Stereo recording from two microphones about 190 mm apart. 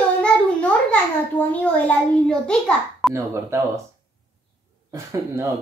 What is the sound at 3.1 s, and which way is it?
Speech, 15° right (ahead or behind).